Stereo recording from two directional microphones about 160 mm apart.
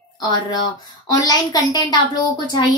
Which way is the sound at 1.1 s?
25° left (ahead or behind).